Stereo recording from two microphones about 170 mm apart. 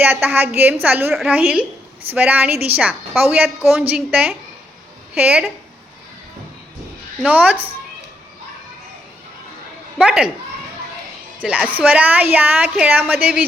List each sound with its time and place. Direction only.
0.0 s a woman's voice: 10° right (ahead or behind)
7.2 s a woman's voice: 10° right (ahead or behind)
10.0 s speech: 5° right (ahead or behind)
11.3 s a woman's voice: 5° right (ahead or behind)